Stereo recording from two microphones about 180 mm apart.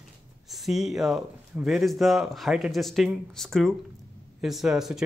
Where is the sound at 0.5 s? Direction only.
Centre (ahead or behind).